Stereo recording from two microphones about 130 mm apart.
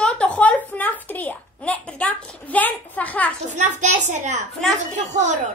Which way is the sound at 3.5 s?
65° right (ahead or behind).